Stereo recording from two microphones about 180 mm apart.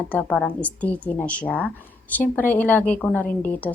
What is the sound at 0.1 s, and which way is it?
A woman's voice, 10° left (ahead or behind).